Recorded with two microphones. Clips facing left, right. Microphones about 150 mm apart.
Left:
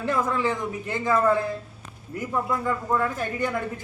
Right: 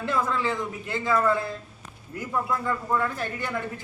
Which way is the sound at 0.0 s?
15° left (ahead or behind).